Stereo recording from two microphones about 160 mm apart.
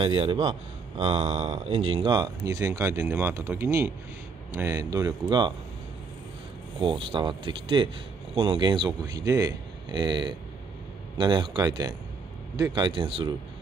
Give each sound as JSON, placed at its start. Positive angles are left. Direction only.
{"t": 0.0, "sound": "a man's voice", "side_deg": -35}
{"t": 6.8, "sound": "speech", "side_deg": -30}